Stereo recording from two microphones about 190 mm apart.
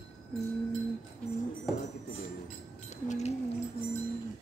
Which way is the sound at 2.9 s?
40° left (ahead or behind).